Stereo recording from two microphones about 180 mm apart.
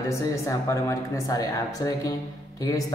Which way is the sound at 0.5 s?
15° left (ahead or behind).